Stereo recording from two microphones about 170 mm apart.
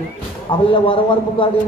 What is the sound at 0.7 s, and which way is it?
Speech, 30° left (ahead or behind).